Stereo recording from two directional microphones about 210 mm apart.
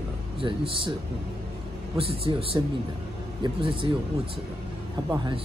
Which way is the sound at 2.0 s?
25° right (ahead or behind).